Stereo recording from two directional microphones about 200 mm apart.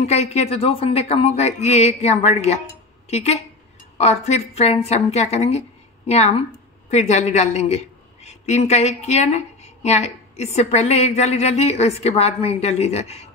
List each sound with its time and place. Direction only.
0.0 s a woman's voice: 35° left (ahead or behind)